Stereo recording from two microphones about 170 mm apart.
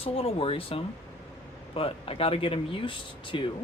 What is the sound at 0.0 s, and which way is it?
Speech, 35° left (ahead or behind).